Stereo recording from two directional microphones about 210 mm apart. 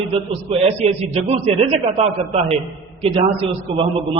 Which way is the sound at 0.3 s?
30° right (ahead or behind).